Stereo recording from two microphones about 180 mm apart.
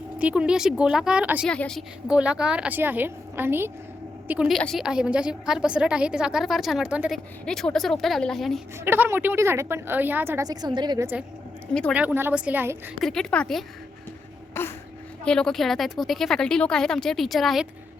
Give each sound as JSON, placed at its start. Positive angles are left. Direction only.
{"t": 0.2, "sound": "a woman's voice", "side_deg": -5}
{"t": 1.5, "sound": "a woman's voice", "side_deg": 5}
{"t": 8.8, "sound": "a woman's voice", "side_deg": -15}
{"t": 11.7, "sound": "a woman's voice", "side_deg": 5}
{"t": 11.9, "sound": "a woman's voice", "side_deg": -10}
{"t": 13.0, "sound": "a woman's voice", "side_deg": 0}